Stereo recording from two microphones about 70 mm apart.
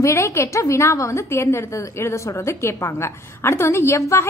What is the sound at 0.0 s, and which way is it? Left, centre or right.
A woman's voice, left.